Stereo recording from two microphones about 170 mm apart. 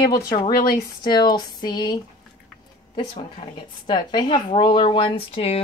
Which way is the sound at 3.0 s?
25° left (ahead or behind).